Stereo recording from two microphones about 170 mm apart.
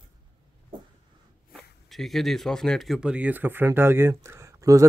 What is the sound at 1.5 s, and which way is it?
Speech, centre (ahead or behind).